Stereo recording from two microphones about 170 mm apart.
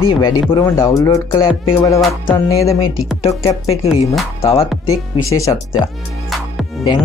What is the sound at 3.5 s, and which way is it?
A woman's voice, 35° left (ahead or behind).